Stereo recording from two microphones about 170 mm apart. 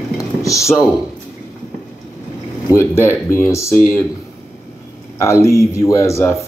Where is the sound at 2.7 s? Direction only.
15° left (ahead or behind).